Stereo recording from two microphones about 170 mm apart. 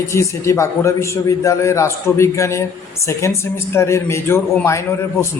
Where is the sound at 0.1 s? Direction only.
15° left (ahead or behind).